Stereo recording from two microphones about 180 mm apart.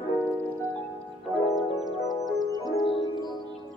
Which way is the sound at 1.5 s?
Centre (ahead or behind).